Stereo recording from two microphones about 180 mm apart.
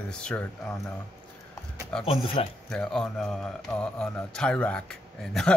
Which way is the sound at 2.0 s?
30° left (ahead or behind).